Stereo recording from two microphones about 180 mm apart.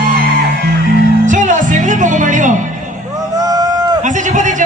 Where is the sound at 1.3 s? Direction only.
45° right (ahead or behind).